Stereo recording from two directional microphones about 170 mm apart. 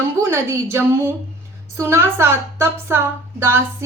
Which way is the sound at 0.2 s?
15° right (ahead or behind).